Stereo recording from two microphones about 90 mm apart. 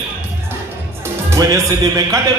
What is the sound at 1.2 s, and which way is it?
Speech, 40° right (ahead or behind).